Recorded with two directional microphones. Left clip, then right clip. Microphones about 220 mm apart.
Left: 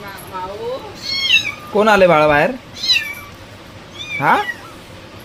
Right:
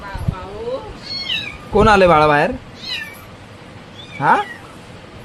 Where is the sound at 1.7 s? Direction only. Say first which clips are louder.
Even; 10° right (ahead or behind).